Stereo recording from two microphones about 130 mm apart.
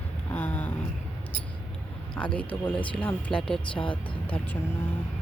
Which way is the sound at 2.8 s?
40° left (ahead or behind).